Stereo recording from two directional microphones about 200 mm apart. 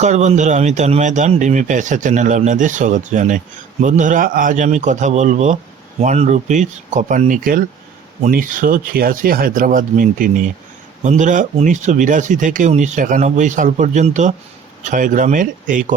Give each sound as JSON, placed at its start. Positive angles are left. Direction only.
{"t": 0.0, "sound": "speech", "side_deg": -35}